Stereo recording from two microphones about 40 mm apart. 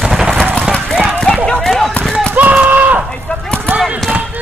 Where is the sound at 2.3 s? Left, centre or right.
Right.